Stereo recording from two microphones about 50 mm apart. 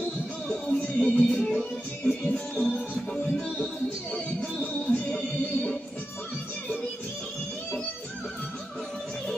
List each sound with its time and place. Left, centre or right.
0.9 s music: centre
1.3 s music: centre